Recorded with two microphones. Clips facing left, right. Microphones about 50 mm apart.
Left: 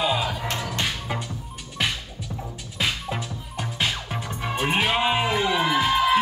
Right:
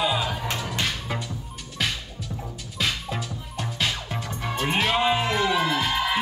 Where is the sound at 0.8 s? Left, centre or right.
Centre.